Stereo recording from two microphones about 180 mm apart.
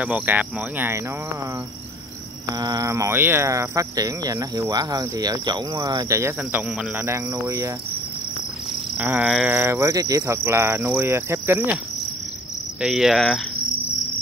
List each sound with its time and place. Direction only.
0.0 s cricket: 10° right (ahead or behind)
2.6 s speech: 20° right (ahead or behind)
7.1 s cricket: 15° right (ahead or behind)
8.9 s cricket: 10° right (ahead or behind)
12.8 s cricket: 5° right (ahead or behind)